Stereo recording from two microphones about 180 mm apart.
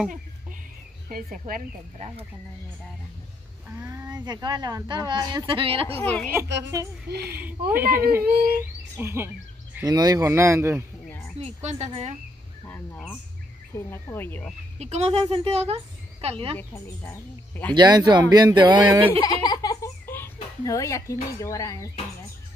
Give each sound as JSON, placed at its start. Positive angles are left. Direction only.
{"t": 1.0, "sound": "speech", "side_deg": -50}
{"t": 3.6, "sound": "speech", "side_deg": -10}
{"t": 5.9, "sound": "speech", "side_deg": 10}
{"t": 7.1, "sound": "speech", "side_deg": -60}
{"t": 7.3, "sound": "speech", "side_deg": -10}
{"t": 11.3, "sound": "a woman's voice", "side_deg": -35}
{"t": 12.6, "sound": "speech", "side_deg": 10}
{"t": 14.8, "sound": "a woman's voice", "side_deg": -35}
{"t": 16.5, "sound": "speech", "side_deg": 15}
{"t": 17.7, "sound": "speech", "side_deg": -25}
{"t": 19.2, "sound": "a sound", "side_deg": 20}
{"t": 20.6, "sound": "speech", "side_deg": 20}